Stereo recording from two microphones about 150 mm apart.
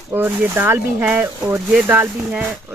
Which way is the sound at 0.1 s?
15° right (ahead or behind).